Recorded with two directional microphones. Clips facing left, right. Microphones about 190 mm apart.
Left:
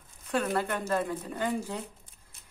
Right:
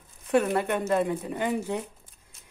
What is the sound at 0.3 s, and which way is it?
Speech, 20° right (ahead or behind).